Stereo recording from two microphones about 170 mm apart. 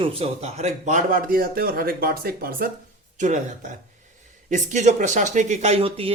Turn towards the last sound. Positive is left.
turn(degrees=-35)  # may be behind; listen again after turning